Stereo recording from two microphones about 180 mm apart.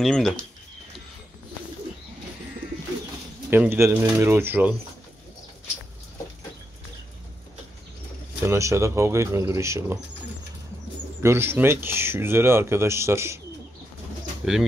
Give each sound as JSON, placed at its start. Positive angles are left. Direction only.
{"t": 0.0, "sound": "speech", "side_deg": 0}
{"t": 3.4, "sound": "speech", "side_deg": -10}
{"t": 8.5, "sound": "speech", "side_deg": -15}
{"t": 11.2, "sound": "speech", "side_deg": -15}
{"t": 14.4, "sound": "speech", "side_deg": 0}